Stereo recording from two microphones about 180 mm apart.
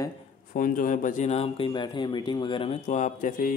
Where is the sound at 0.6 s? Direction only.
50° left (ahead or behind).